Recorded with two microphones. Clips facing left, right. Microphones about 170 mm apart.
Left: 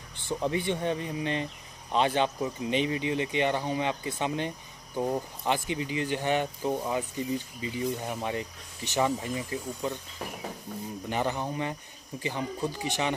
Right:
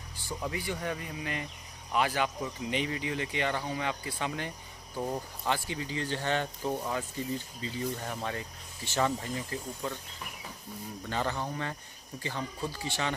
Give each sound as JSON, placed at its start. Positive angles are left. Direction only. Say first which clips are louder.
{"t": 0.3, "sound": "speech", "louder": "left 6 dB", "side_deg": 25}
{"t": 11.1, "sound": "speech", "louder": "left 3 dB", "side_deg": 15}